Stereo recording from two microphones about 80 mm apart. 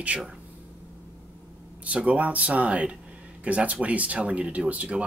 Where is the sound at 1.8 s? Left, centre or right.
Centre.